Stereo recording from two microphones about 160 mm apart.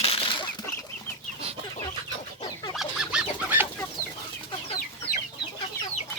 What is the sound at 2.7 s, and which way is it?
Fowl, 5° right (ahead or behind).